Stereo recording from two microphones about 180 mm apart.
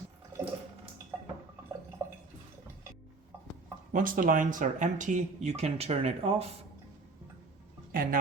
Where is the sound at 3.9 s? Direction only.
50° right (ahead or behind); by 6.5 s 35° right (ahead or behind).